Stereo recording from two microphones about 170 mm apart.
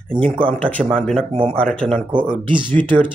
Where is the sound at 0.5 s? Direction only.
10° left (ahead or behind).